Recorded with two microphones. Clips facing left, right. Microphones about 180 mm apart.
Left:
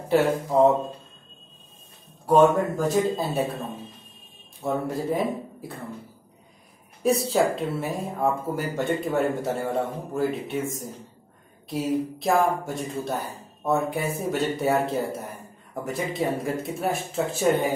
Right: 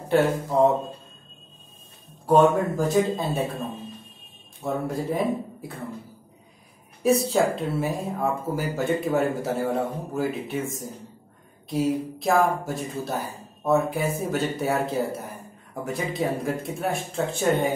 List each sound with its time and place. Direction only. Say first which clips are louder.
0.1 s speech: even; centre (ahead or behind)
2.2 s speech: even; centre (ahead or behind)
4.6 s speech: left 1 dB; centre (ahead or behind)
7.0 s speech: right 1 dB; centre (ahead or behind)